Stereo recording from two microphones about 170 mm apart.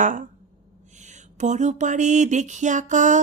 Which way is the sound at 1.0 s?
45° right (ahead or behind).